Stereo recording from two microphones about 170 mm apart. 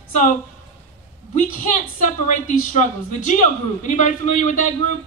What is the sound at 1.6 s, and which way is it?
A woman's voice, 50° left (ahead or behind).